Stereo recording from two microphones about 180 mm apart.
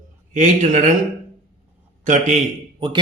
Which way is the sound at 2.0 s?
40° right (ahead or behind).